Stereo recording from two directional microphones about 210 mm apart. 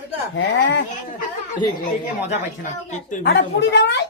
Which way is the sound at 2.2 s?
35° left (ahead or behind).